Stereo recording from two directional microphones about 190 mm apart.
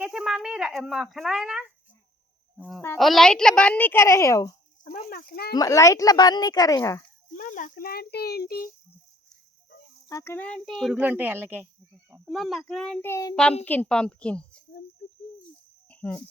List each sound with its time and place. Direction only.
0.0 s a woman's voice: 5° right (ahead or behind); by 4.5 s 15° left (ahead or behind)
5.0 s a child's voice: 50° left (ahead or behind)
5.5 s speech: 15° left (ahead or behind)
7.3 s a child's voice: 45° left (ahead or behind)
10.1 s a woman's voice: 15° left (ahead or behind); by 11.7 s 10° right (ahead or behind)
12.2 s speech: centre (ahead or behind)
15.9 s cricket: 10° left (ahead or behind)